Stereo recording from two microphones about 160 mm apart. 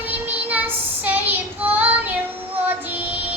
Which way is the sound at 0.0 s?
10° right (ahead or behind).